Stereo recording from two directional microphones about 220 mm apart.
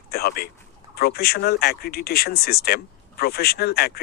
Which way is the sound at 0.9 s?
45° left (ahead or behind).